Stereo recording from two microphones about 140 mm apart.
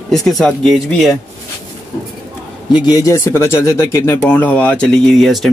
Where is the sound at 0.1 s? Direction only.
5° left (ahead or behind).